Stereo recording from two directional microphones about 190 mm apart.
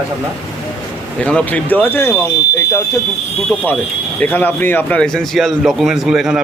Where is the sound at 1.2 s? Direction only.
5° left (ahead or behind).